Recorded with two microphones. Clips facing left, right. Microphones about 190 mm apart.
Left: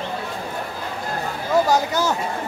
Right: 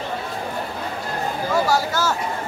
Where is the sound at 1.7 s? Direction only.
20° left (ahead or behind).